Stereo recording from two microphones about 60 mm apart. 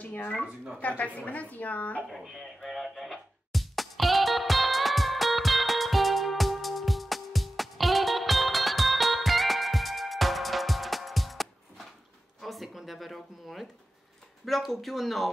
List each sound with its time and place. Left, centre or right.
0.0 s a woman's voice: left
2.0 s music: centre
12.4 s a sound: centre
14.4 s speech: centre